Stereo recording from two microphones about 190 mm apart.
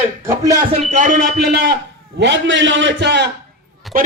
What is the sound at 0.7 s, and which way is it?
A man's voice, 35° right (ahead or behind).